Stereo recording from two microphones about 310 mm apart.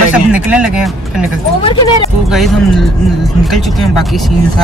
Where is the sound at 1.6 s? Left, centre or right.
Centre.